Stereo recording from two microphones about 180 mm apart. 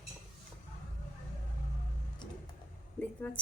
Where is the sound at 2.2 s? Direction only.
25° left (ahead or behind).